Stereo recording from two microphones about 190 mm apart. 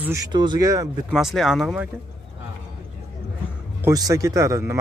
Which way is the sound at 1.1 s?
Centre (ahead or behind).